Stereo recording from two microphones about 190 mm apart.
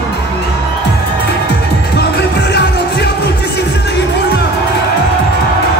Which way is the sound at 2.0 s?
60° left (ahead or behind).